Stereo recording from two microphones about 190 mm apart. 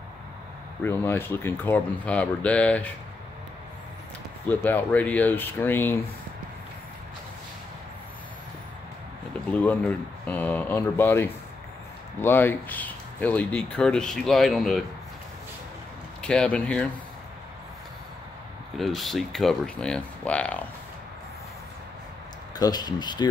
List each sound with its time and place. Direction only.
0.8 s speech: 10° left (ahead or behind)
4.5 s speech: 10° left (ahead or behind)
9.6 s speech: 5° left (ahead or behind)
16.2 s speech: 5° left (ahead or behind)
18.8 s speech: centre (ahead or behind)
22.6 s speech: 20° left (ahead or behind)